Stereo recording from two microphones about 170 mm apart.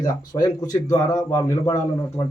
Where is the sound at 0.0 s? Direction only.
20° left (ahead or behind).